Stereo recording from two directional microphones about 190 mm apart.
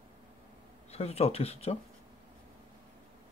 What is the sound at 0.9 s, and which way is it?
Speech, 35° left (ahead or behind).